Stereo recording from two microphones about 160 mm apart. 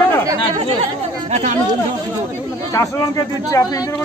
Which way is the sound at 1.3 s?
40° right (ahead or behind).